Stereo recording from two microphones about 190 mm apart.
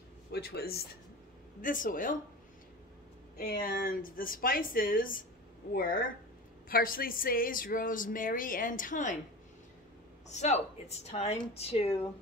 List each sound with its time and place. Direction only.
0.3 s speech: 55° left (ahead or behind)
3.3 s speech: 50° left (ahead or behind)
10.3 s speech: 35° left (ahead or behind)